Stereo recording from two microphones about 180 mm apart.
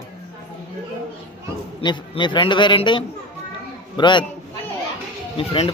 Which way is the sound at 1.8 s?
30° left (ahead or behind).